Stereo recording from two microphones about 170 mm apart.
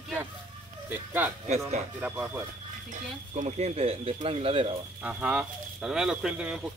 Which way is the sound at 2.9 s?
40° right (ahead or behind).